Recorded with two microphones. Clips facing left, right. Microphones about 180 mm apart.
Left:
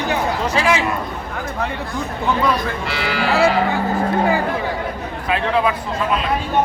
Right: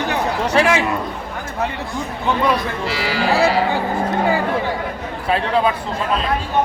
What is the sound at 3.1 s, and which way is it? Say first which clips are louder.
Cattle: even; 35° right (ahead or behind).